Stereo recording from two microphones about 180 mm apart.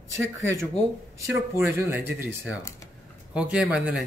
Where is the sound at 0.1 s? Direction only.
15° right (ahead or behind).